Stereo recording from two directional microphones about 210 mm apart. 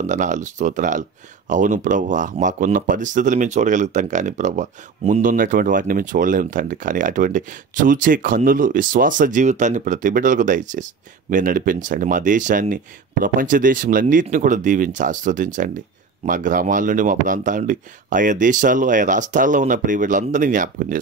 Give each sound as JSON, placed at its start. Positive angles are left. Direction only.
{"t": 0.0, "sound": "speech", "side_deg": -35}